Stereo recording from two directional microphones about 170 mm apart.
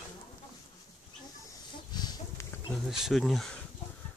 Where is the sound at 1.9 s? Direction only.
25° left (ahead or behind).